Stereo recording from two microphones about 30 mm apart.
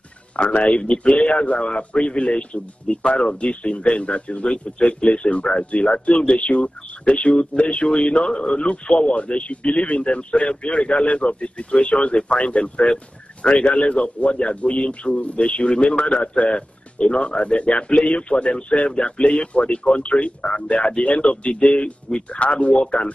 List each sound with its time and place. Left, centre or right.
0.3 s speech: left
8.2 s speech: left
13.4 s speech: centre
13.9 s speech: left
16.0 s speech: left
16.4 s speech: left